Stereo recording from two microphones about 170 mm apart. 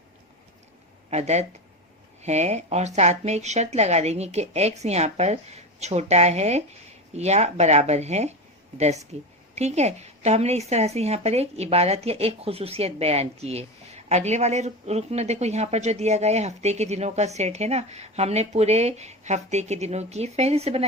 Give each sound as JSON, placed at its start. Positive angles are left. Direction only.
{"t": 1.1, "sound": "a woman's voice", "side_deg": -40}